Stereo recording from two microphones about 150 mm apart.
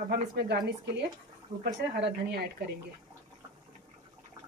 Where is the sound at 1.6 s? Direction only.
90° right.